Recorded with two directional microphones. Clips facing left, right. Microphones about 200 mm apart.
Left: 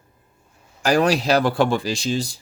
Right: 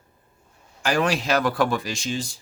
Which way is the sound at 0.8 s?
40° left (ahead or behind).